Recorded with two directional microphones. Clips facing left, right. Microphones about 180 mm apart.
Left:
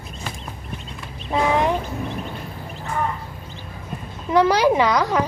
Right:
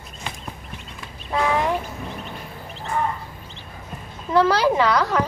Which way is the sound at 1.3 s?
20° left (ahead or behind).